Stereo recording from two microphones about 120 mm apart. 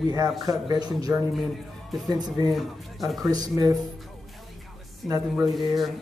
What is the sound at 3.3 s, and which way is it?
Speech, 30° right (ahead or behind).